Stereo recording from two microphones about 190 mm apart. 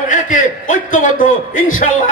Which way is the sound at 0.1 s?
40° left (ahead or behind).